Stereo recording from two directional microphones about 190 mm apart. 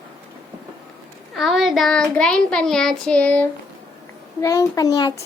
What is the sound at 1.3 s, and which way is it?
Child singing, centre (ahead or behind).